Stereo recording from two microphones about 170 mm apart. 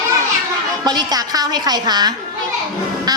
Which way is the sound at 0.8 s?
25° right (ahead or behind).